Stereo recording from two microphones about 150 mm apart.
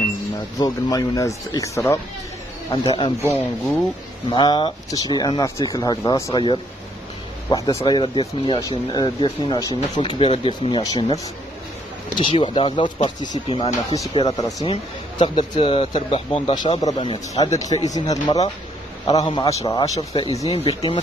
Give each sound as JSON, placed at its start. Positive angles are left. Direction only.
{"t": 0.6, "sound": "speech", "side_deg": 25}
{"t": 3.2, "sound": "speech", "side_deg": 15}
{"t": 4.3, "sound": "speech", "side_deg": 30}
{"t": 7.4, "sound": "speech", "side_deg": 20}
{"t": 10.8, "sound": "speech", "side_deg": 25}
{"t": 12.2, "sound": "speech", "side_deg": 35}
{"t": 20.5, "sound": "speech", "side_deg": 40}